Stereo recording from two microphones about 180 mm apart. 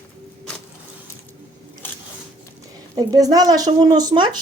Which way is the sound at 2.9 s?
20° right (ahead or behind).